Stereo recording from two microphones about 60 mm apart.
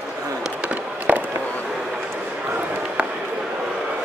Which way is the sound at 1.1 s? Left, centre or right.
Right.